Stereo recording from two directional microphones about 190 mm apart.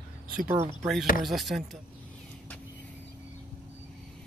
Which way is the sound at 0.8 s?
Centre (ahead or behind).